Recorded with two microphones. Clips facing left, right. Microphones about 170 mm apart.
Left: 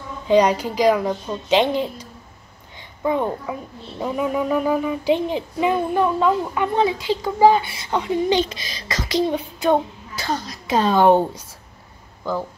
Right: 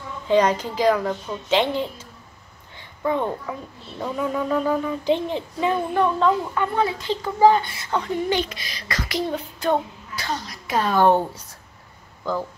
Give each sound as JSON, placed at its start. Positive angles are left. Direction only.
{"t": 0.3, "sound": "a woman's voice", "side_deg": 15}